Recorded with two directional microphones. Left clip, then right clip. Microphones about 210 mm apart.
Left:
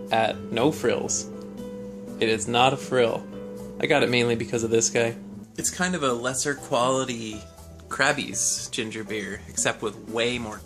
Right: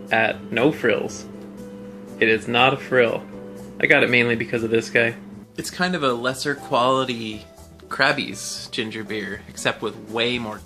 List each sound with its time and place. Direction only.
0.1 s speech: 5° left (ahead or behind)
2.1 s speech: 5° left (ahead or behind)